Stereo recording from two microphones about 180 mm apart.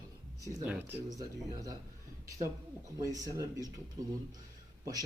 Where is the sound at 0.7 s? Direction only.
10° right (ahead or behind).